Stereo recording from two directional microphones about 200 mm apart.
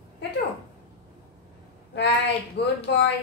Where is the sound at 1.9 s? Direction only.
60° left (ahead or behind).